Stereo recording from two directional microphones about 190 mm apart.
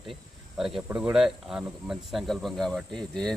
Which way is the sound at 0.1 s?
Centre (ahead or behind).